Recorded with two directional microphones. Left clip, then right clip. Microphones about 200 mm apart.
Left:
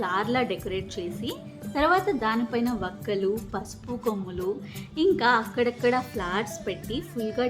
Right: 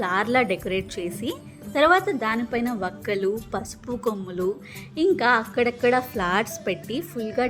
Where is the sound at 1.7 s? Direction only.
20° right (ahead or behind).